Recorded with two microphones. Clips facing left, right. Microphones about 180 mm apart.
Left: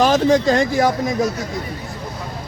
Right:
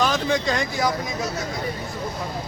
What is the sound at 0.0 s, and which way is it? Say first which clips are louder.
Speech: left 8 dB; 35° left (ahead or behind).